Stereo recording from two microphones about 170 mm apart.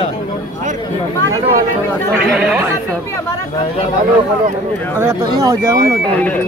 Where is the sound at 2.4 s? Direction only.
10° right (ahead or behind).